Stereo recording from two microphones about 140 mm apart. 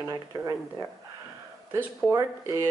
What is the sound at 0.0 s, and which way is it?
Speech, 25° right (ahead or behind).